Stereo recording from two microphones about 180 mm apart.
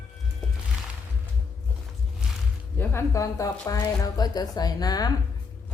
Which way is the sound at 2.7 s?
15° left (ahead or behind).